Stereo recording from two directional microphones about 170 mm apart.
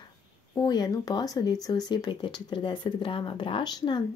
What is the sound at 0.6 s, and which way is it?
Speech, 25° left (ahead or behind).